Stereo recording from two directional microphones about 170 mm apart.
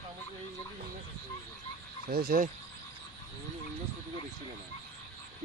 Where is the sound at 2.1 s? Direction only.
60° right (ahead or behind).